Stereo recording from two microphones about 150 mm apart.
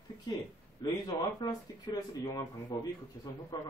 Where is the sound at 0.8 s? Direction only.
25° left (ahead or behind).